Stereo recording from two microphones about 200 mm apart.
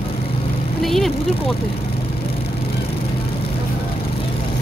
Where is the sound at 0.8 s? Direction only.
Centre (ahead or behind).